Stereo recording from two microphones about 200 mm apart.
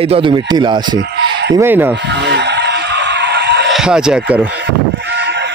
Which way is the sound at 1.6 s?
10° right (ahead or behind).